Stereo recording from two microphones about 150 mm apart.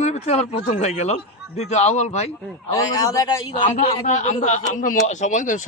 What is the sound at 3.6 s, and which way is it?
A man's voice, 55° left (ahead or behind).